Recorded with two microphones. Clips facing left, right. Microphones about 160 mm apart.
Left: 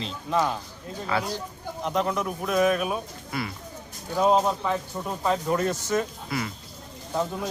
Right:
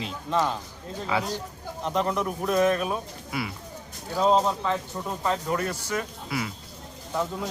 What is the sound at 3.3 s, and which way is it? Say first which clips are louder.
Speech: even; 5° right (ahead or behind).